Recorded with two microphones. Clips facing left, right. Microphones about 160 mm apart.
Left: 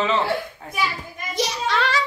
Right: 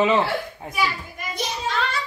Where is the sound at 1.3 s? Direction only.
85° left.